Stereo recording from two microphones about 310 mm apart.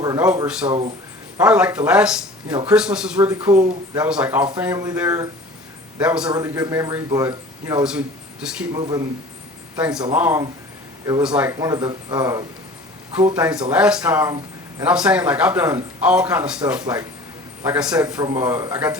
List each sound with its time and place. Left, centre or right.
0.0 s a man's voice: centre
2.5 s a man's voice: centre
2.7 s a man's voice: centre
3.6 s speech: centre
4.0 s a man's voice: centre